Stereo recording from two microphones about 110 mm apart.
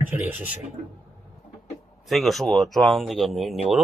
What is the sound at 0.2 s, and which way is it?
Speech, 15° right (ahead or behind).